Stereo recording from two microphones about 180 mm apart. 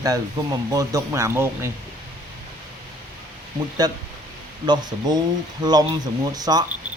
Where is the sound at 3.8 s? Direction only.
20° right (ahead or behind).